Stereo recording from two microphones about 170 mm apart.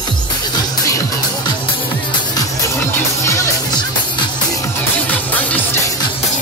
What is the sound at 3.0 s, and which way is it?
Music, 15° left (ahead or behind).